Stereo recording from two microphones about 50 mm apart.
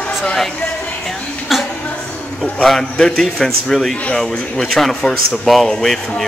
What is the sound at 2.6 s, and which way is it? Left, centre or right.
A man's voice, centre.